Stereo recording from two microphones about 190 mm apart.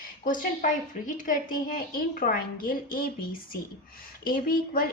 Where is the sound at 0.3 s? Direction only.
45° left (ahead or behind).